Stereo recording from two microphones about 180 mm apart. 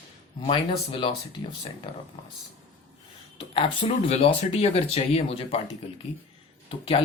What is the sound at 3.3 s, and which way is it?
Speech, 30° left (ahead or behind).